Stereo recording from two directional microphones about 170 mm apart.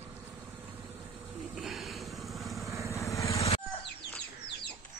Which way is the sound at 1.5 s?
Centre (ahead or behind).